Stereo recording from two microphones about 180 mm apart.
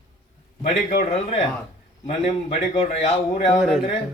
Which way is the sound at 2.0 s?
35° left (ahead or behind).